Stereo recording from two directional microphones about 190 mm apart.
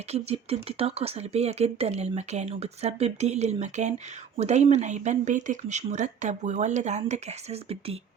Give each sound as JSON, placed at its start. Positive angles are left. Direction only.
{"t": 0.1, "sound": "speech", "side_deg": -35}